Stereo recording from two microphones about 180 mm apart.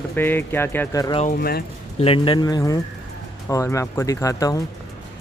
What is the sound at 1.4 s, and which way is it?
Speech, 60° left (ahead or behind).